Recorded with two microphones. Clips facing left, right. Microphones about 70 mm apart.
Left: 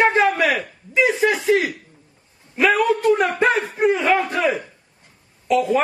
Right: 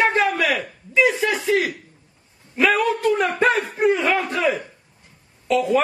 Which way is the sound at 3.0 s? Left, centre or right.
Centre.